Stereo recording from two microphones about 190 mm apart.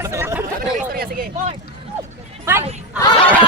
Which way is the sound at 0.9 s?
50° right (ahead or behind).